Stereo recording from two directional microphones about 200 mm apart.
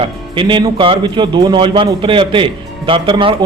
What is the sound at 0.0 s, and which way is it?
Speech, 25° right (ahead or behind).